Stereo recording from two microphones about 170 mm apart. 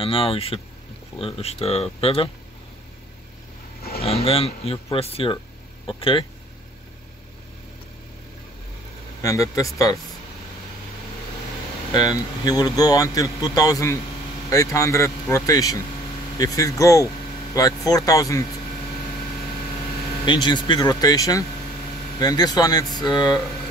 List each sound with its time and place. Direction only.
0.0 s speech: 35° left (ahead or behind)
4.0 s speech: 35° left (ahead or behind)
9.2 s speech: 20° left (ahead or behind)
11.9 s speech: 25° left (ahead or behind)
20.2 s speech: 25° left (ahead or behind)